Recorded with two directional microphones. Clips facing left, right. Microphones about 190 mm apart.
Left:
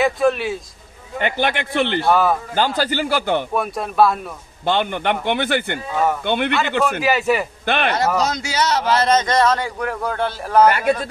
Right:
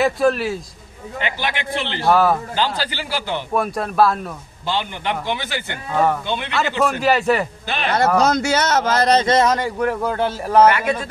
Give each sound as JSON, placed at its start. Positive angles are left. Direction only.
{"t": 0.0, "sound": "speech", "side_deg": 0}
{"t": 1.2, "sound": "a man's voice", "side_deg": 55}
{"t": 2.0, "sound": "speech", "side_deg": 0}
{"t": 2.5, "sound": "a man's voice", "side_deg": 50}
{"t": 3.5, "sound": "speech", "side_deg": 0}
{"t": 4.6, "sound": "a man's voice", "side_deg": 55}
{"t": 6.8, "sound": "speech", "side_deg": 0}
{"t": 7.6, "sound": "a man's voice", "side_deg": 60}
{"t": 8.2, "sound": "speech", "side_deg": -55}
{"t": 9.5, "sound": "speech", "side_deg": -5}